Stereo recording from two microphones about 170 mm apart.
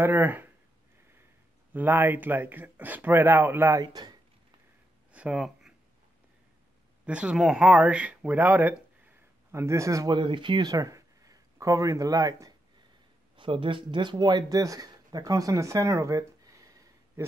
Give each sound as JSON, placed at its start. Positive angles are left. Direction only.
{"t": 0.0, "sound": "speech", "side_deg": -10}
{"t": 1.7, "sound": "speech", "side_deg": -10}
{"t": 5.1, "sound": "a sound", "side_deg": -5}
{"t": 7.1, "sound": "speech", "side_deg": -5}
{"t": 13.4, "sound": "speech", "side_deg": -30}